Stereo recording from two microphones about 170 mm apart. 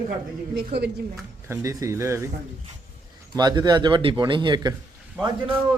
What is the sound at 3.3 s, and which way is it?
Speech, 25° right (ahead or behind).